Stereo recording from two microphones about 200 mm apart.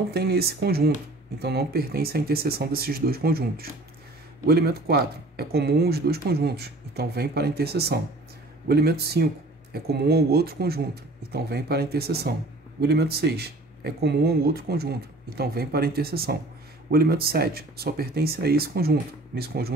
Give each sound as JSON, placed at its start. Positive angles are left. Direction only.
{"t": 0.1, "sound": "speech", "side_deg": -50}